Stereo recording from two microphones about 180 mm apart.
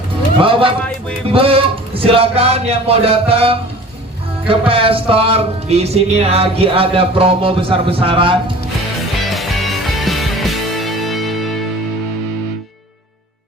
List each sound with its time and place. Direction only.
0.4 s music: 30° right (ahead or behind)
9.2 s music: centre (ahead or behind)